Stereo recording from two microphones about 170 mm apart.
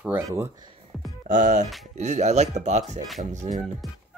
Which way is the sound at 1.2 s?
50° right (ahead or behind).